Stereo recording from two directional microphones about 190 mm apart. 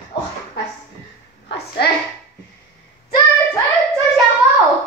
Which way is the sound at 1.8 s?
60° left (ahead or behind).